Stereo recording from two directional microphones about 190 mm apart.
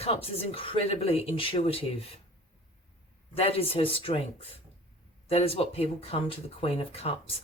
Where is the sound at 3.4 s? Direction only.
30° left (ahead or behind).